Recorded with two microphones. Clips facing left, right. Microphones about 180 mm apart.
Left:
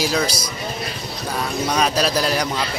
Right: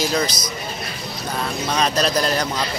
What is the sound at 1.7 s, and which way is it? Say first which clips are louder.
Speech: even; 5° left (ahead or behind).